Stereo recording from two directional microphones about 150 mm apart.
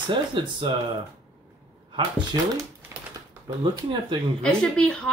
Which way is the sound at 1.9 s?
30° right (ahead or behind).